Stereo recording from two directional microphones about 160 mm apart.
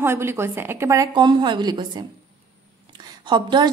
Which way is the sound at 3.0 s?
30° right (ahead or behind).